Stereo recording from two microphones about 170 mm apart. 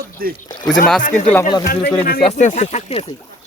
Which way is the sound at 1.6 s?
65° left (ahead or behind).